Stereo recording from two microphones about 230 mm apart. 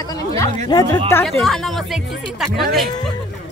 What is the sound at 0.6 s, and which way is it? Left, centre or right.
Speech, centre.